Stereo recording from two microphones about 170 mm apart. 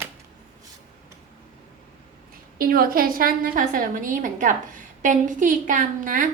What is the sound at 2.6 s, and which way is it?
A woman's voice, 60° right (ahead or behind).